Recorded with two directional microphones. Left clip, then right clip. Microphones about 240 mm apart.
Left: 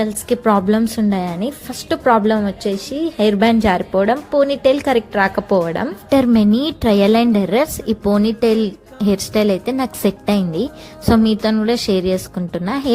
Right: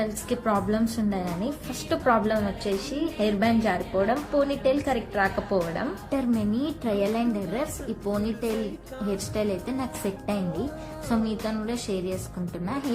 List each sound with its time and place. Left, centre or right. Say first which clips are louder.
0.0 s a woman's voice: left 10 dB; left